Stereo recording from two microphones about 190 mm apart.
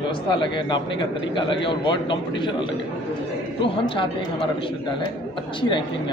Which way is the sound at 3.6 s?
25° left (ahead or behind).